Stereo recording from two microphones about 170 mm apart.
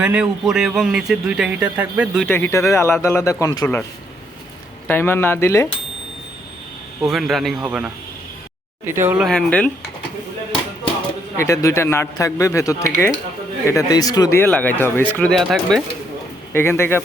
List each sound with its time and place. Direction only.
0.0 s speech: 10° right (ahead or behind)
2.2 s speech: 15° left (ahead or behind)
4.9 s speech: 15° left (ahead or behind)
7.1 s speech: centre (ahead or behind)
9.2 s speech: 5° left (ahead or behind)
11.3 s speech: 20° left (ahead or behind); by 15.8 s centre (ahead or behind)
16.5 s speech: 15° left (ahead or behind)